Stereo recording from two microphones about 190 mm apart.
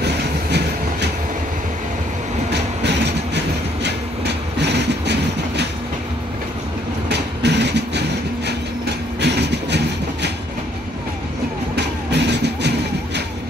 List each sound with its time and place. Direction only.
2.5 s train: 65° right (ahead or behind)
7.1 s train: 65° right (ahead or behind)
9.2 s train: 60° right (ahead or behind)
11.7 s music: 60° right (ahead or behind)